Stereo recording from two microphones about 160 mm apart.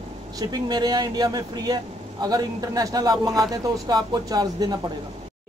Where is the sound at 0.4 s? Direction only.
25° right (ahead or behind).